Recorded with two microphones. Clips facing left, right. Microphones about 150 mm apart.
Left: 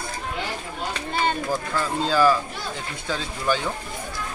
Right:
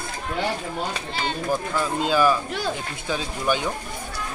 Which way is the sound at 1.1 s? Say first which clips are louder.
Left 8 dB; 50° left (ahead or behind).